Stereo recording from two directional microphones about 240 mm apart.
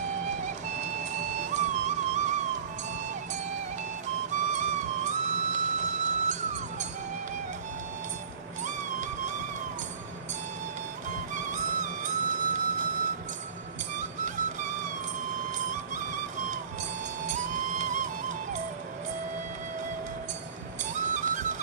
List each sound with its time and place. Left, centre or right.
1.5 s music: right
4.3 s music: right
8.6 s music: right
11.3 s music: right
13.9 s music: right
17.3 s music: right
20.9 s music: right